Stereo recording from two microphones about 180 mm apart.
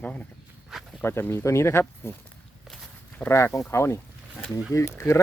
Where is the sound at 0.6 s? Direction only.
Centre (ahead or behind).